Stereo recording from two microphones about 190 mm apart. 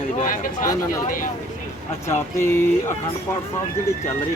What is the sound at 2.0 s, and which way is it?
Speech, 15° left (ahead or behind).